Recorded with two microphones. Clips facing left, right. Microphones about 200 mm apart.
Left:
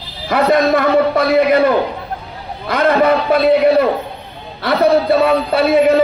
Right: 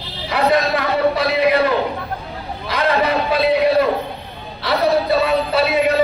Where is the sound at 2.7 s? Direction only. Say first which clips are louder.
Left 5 dB; 50° left (ahead or behind).